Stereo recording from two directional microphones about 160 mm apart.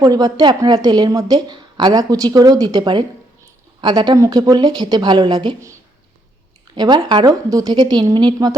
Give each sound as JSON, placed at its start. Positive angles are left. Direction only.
{"t": 0.0, "sound": "a woman's voice", "side_deg": -25}
{"t": 6.7, "sound": "a woman's voice", "side_deg": -25}